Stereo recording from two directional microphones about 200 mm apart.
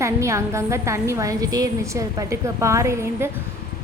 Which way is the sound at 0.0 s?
15° right (ahead or behind).